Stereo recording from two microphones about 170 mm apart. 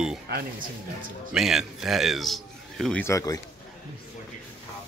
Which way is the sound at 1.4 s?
Centre (ahead or behind).